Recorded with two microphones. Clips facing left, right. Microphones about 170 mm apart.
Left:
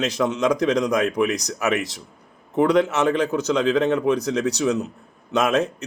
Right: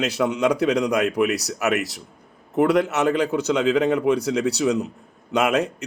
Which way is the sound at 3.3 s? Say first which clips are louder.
Even; 10° right (ahead or behind).